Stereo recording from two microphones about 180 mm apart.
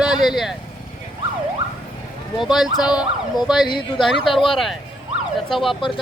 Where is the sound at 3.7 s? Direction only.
25° left (ahead or behind).